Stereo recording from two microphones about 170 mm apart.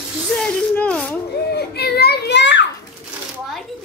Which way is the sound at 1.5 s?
70° left (ahead or behind).